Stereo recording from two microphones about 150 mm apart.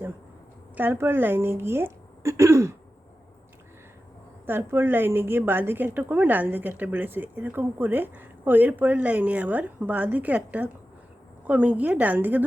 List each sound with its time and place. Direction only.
0.8 s a woman's voice: 15° right (ahead or behind)
4.4 s a woman's voice: 15° right (ahead or behind)